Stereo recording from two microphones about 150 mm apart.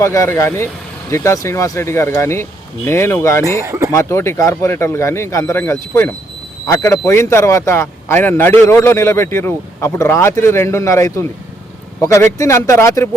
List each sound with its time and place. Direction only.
0.0 s speech: 20° left (ahead or behind)
3.6 s speech: 20° right (ahead or behind)
3.9 s speech: 20° left (ahead or behind)